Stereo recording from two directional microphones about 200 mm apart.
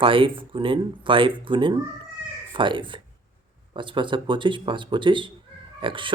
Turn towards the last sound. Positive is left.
turn(degrees=-25)  # may be behind; listen again after turning